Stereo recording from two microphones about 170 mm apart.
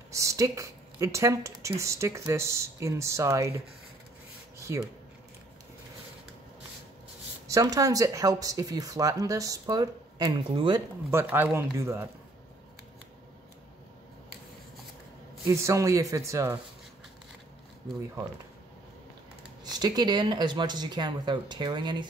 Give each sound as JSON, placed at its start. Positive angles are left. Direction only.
{"t": 0.1, "sound": "speech", "side_deg": -20}
{"t": 4.7, "sound": "speech", "side_deg": -15}
{"t": 7.4, "sound": "speech", "side_deg": -20}
{"t": 11.1, "sound": "speech", "side_deg": -10}
{"t": 15.4, "sound": "speech", "side_deg": -20}
{"t": 19.6, "sound": "speech", "side_deg": -25}